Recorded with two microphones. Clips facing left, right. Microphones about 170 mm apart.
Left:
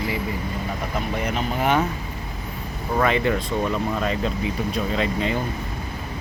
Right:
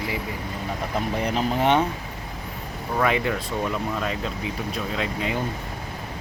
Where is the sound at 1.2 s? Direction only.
35° right (ahead or behind).